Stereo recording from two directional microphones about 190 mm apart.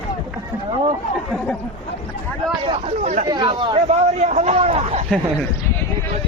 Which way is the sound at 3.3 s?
25° right (ahead or behind).